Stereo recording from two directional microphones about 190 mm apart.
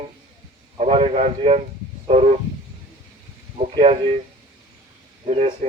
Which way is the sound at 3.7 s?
30° right (ahead or behind).